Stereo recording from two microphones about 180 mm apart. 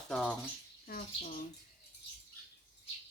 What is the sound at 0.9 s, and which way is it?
Speech, 50° left (ahead or behind).